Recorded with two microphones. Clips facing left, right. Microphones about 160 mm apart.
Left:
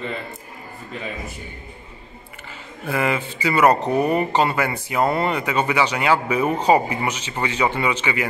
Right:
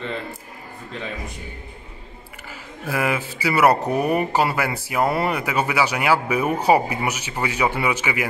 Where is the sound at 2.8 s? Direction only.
5° right (ahead or behind).